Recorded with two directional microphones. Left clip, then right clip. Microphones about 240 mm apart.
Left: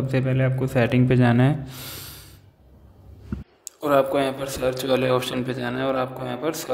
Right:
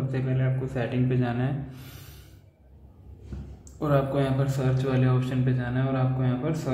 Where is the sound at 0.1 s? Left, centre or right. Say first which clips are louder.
Left 9 dB; left.